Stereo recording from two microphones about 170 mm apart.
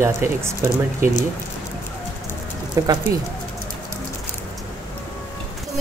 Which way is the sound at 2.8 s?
20° right (ahead or behind).